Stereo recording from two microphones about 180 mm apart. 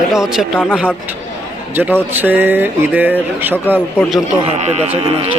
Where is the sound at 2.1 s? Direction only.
10° right (ahead or behind).